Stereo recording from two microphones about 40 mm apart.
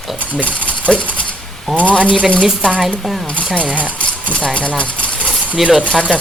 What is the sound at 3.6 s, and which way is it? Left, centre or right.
Speech, right.